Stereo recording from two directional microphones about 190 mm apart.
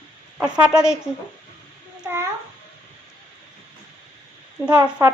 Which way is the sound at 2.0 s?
10° right (ahead or behind).